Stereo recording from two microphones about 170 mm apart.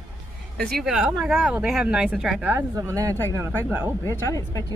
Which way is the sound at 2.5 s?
15° right (ahead or behind).